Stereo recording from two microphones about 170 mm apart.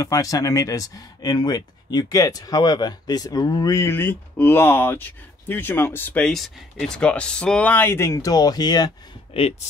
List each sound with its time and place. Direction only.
0.0 s speech: 20° left (ahead or behind)